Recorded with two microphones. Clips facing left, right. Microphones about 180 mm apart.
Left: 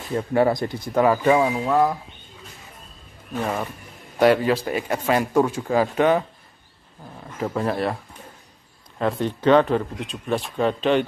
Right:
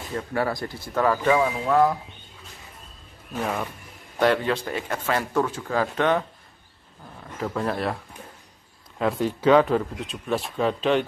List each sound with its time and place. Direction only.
0.1 s speech: 20° left (ahead or behind)
4.2 s a man's voice: 10° left (ahead or behind)
7.5 s speech: centre (ahead or behind)